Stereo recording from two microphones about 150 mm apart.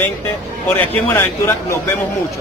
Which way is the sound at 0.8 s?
15° left (ahead or behind).